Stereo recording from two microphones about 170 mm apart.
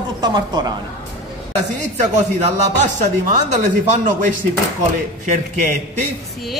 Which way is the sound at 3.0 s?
45° right (ahead or behind).